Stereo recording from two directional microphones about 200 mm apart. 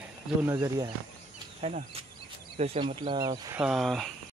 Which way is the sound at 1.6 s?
35° right (ahead or behind).